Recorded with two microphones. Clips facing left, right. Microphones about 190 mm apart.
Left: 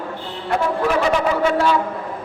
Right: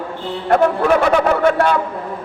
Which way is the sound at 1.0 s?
55° right (ahead or behind).